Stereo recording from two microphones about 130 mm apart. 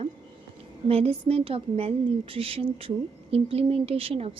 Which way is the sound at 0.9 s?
50° right (ahead or behind).